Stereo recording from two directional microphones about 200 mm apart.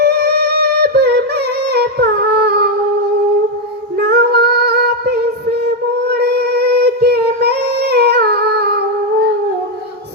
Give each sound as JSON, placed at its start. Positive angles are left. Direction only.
{"t": 0.0, "sound": "music", "side_deg": -55}
{"t": 4.0, "sound": "female singing", "side_deg": -55}
{"t": 6.1, "sound": "music", "side_deg": -55}